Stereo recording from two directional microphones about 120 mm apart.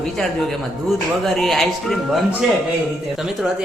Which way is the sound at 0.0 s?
5° left (ahead or behind).